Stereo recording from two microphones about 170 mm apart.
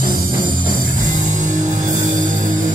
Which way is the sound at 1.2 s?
50° right (ahead or behind).